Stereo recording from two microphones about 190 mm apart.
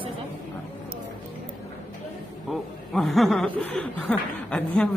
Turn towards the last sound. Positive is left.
turn(degrees=5)  # may be behind; listen again after turning